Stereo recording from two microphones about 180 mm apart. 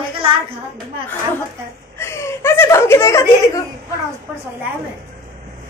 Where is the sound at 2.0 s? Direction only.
15° left (ahead or behind).